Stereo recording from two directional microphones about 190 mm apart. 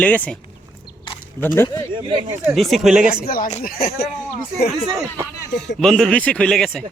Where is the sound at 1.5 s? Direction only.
15° left (ahead or behind).